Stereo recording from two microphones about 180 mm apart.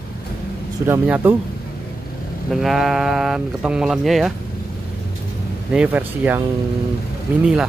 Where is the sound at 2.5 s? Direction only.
Centre (ahead or behind).